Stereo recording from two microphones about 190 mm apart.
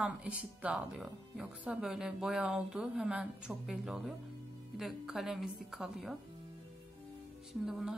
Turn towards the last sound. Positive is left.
turn(degrees=-5)  # may be behind; listen again after turning